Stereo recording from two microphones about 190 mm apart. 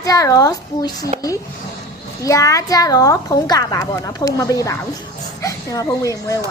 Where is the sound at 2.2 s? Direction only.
20° left (ahead or behind).